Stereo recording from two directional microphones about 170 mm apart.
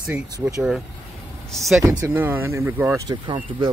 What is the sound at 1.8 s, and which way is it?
Speech, 15° right (ahead or behind).